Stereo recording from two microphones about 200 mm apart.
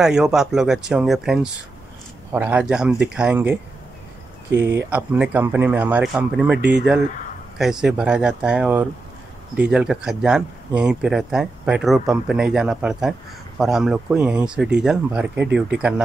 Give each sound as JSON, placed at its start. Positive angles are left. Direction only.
{"t": 0.0, "sound": "speech", "side_deg": -5}